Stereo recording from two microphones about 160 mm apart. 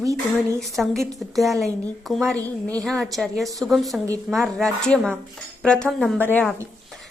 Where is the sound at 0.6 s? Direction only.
Centre (ahead or behind).